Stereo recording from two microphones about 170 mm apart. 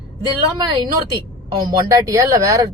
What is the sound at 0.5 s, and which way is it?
Speech, 25° right (ahead or behind).